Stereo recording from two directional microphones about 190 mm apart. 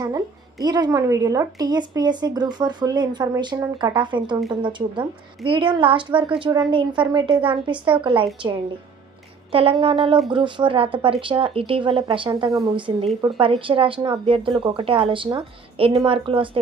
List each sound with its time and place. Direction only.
0.0 s a woman's voice: 20° right (ahead or behind)
9.5 s a woman's voice: 30° right (ahead or behind)